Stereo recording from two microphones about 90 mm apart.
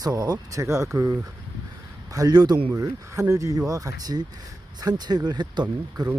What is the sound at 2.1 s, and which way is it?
Speech, 45° right (ahead or behind).